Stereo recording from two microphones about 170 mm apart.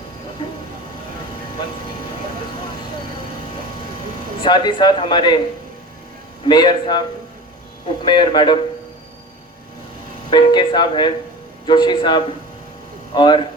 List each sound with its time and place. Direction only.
0.4 s vehicle: 30° left (ahead or behind)
4.4 s speech: 25° left (ahead or behind)
6.4 s speech: 25° left (ahead or behind)
8.0 s speech: 25° left (ahead or behind)
10.2 s speech: 30° left (ahead or behind)